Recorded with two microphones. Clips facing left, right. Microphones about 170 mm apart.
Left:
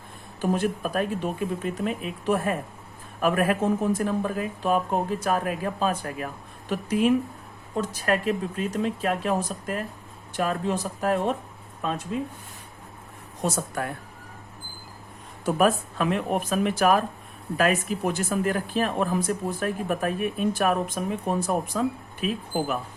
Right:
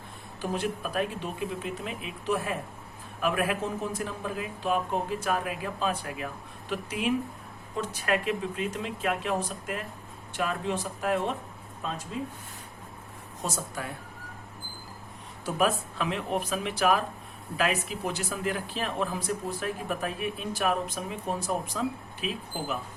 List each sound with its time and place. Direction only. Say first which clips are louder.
0.5 s speech: left 4 dB; 45° left (ahead or behind)
13.4 s a woman's voice: left 7 dB; 60° left (ahead or behind)
15.4 s speech: left 5 dB; 50° left (ahead or behind)